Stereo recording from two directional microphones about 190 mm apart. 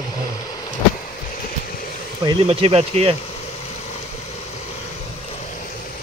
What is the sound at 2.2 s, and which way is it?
Speech, 30° right (ahead or behind).